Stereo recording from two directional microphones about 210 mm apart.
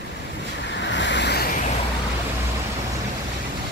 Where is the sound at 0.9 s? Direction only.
60° left (ahead or behind).